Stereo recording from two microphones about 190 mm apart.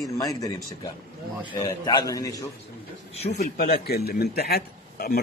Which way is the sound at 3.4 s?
50° left (ahead or behind).